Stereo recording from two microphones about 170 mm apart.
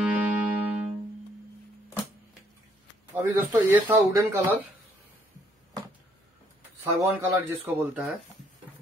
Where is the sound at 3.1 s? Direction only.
10° right (ahead or behind).